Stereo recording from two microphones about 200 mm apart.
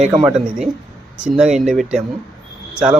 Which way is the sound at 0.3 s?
5° right (ahead or behind).